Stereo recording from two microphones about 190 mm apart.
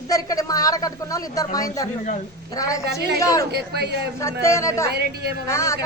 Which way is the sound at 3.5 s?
60° right (ahead or behind).